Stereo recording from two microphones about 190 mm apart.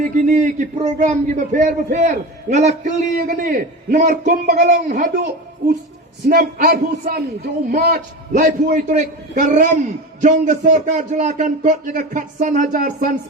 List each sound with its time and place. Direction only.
0.0 s a man's voice: 40° right (ahead or behind)
6.2 s a man's voice: 50° right (ahead or behind)